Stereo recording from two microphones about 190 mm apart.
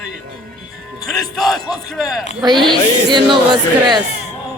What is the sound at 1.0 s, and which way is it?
Speech, centre (ahead or behind).